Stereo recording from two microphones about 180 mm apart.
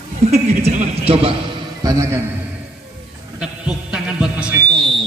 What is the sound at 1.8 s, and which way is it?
Speech, 15° right (ahead or behind).